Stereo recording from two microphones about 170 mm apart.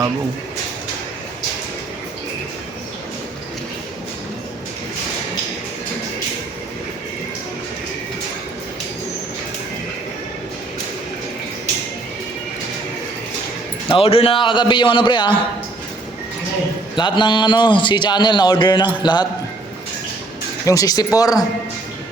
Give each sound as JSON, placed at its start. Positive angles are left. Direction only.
{"t": 13.8, "sound": "a man's voice", "side_deg": 30}
{"t": 16.9, "sound": "a man's voice", "side_deg": 25}
{"t": 20.7, "sound": "a man's voice", "side_deg": 20}